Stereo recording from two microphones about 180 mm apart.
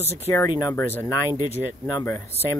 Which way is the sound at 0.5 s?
20° left (ahead or behind).